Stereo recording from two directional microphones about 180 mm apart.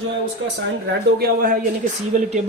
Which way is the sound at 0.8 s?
55° right (ahead or behind).